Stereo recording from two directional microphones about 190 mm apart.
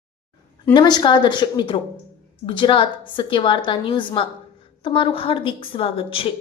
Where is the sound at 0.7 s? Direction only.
25° left (ahead or behind).